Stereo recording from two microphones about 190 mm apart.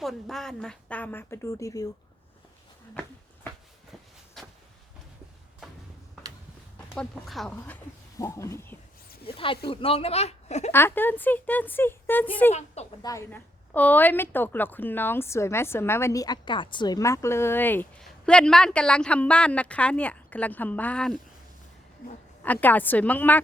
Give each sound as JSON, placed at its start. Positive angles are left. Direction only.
{"t": 0.0, "sound": "a woman's voice", "side_deg": 0}
{"t": 6.7, "sound": "a woman's voice", "side_deg": 5}
{"t": 9.6, "sound": "speech", "side_deg": 30}
{"t": 10.7, "sound": "a woman's voice", "side_deg": 10}
{"t": 12.5, "sound": "speech", "side_deg": 35}
{"t": 13.0, "sound": "a woman's voice", "side_deg": 15}
{"t": 22.4, "sound": "a woman's voice", "side_deg": 10}